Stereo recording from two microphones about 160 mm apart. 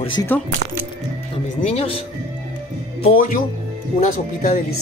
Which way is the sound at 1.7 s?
35° left (ahead or behind).